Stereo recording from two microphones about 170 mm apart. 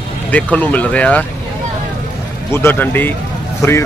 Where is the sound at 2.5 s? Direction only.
15° left (ahead or behind).